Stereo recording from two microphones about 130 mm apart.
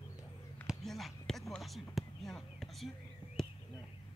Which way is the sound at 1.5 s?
Centre (ahead or behind).